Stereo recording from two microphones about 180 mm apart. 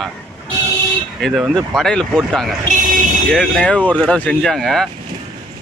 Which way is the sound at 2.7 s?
45° right (ahead or behind).